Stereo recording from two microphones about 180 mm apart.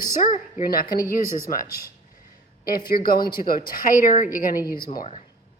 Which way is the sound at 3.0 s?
55° left (ahead or behind).